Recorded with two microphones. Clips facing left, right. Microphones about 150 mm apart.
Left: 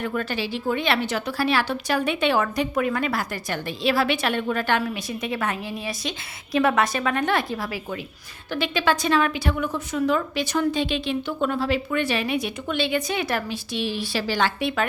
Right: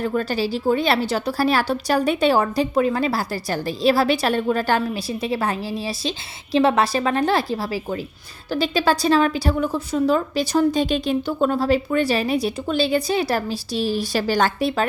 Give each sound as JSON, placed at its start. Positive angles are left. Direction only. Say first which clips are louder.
{"t": 0.0, "sound": "a woman's voice", "louder": "right 5 dB", "side_deg": -35}